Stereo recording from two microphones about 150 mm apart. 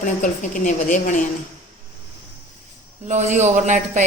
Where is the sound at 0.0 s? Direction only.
60° left (ahead or behind).